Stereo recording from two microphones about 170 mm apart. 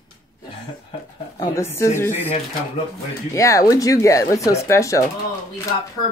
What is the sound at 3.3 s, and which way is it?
Speech, 20° left (ahead or behind).